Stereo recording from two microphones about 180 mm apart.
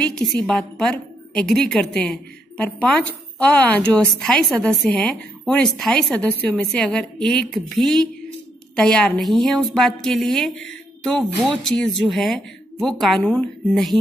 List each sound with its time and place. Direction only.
0.0 s a woman's voice: 5° left (ahead or behind)